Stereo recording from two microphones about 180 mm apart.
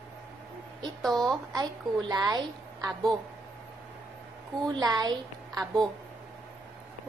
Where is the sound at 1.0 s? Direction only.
Centre (ahead or behind).